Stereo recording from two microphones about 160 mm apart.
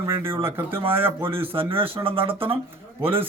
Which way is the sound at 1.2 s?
35° right (ahead or behind).